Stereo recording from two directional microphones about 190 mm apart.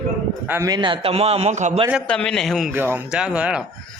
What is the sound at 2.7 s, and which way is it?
Speech, 10° right (ahead or behind).